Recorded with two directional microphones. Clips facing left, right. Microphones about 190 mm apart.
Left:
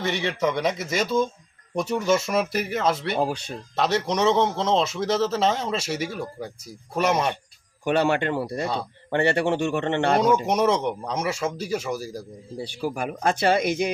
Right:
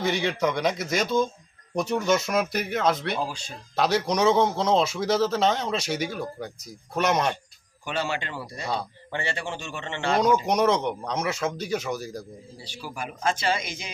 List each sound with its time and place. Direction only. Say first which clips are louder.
0.0 s a man's voice: even; centre (ahead or behind)
3.2 s speech: left 6 dB; 60° left (ahead or behind)
3.8 s a man's voice: even; centre (ahead or behind)
7.9 s speech: left 8 dB; 60° left (ahead or behind)
8.6 s a man's voice: left 2 dB; centre (ahead or behind)
9.0 s speech: left 12 dB; 60° left (ahead or behind)
10.2 s a man's voice: right 3 dB; 5° left (ahead or behind)
12.5 s speech: left 9 dB; 55° left (ahead or behind)